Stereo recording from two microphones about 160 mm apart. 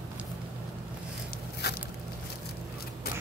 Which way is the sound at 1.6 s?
90° left.